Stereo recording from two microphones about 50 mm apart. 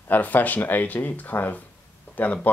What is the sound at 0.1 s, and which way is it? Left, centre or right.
Speech, left.